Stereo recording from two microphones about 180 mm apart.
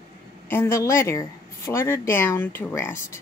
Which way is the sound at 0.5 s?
15° left (ahead or behind).